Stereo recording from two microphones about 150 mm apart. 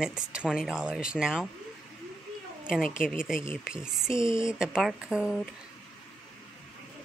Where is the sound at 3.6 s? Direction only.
5° right (ahead or behind).